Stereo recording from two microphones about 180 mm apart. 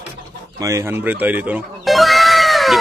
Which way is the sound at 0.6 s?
15° right (ahead or behind).